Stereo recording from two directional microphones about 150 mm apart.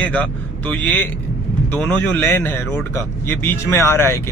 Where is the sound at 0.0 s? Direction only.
10° left (ahead or behind).